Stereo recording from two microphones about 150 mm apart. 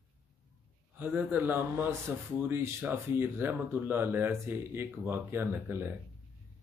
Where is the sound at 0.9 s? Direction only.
10° right (ahead or behind).